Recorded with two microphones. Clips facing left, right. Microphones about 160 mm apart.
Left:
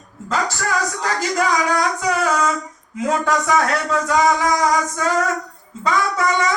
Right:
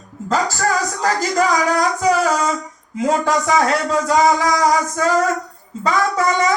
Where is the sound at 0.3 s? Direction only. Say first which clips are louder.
Right 3 dB; 40° right (ahead or behind).